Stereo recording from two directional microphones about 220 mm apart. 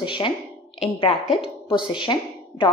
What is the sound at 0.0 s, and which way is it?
A woman's voice, 20° left (ahead or behind).